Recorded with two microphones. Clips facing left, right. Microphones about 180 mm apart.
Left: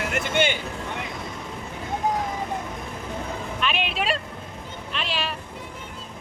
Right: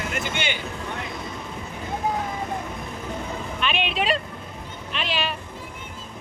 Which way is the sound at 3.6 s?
Centre (ahead or behind).